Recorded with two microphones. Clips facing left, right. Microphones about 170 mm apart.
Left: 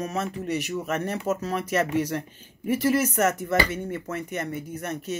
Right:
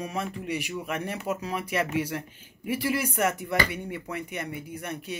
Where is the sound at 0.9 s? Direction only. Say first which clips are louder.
Left 4 dB; 45° left (ahead or behind).